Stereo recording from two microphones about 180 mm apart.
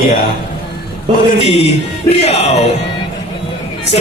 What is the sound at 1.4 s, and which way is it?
Music, 35° left (ahead or behind).